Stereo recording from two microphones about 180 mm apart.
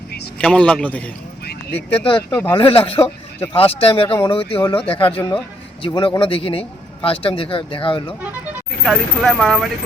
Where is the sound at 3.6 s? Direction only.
30° left (ahead or behind).